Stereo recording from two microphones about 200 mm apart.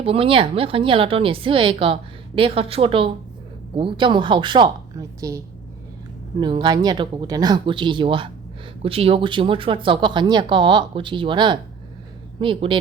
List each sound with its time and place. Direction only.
0.0 s a woman's voice: 30° right (ahead or behind)
6.4 s a woman's voice: 20° right (ahead or behind)